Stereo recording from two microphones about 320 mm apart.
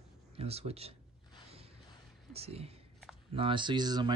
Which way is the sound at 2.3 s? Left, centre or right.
Centre.